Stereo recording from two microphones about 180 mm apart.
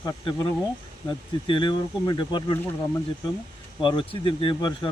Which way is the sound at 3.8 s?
25° left (ahead or behind).